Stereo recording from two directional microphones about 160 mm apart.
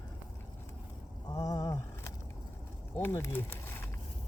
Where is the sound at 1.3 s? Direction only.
25° left (ahead or behind).